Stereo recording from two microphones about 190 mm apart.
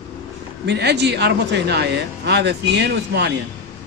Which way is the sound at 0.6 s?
65° right (ahead or behind).